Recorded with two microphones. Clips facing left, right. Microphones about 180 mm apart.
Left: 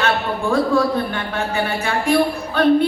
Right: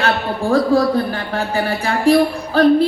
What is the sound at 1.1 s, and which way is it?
Speech, 35° right (ahead or behind).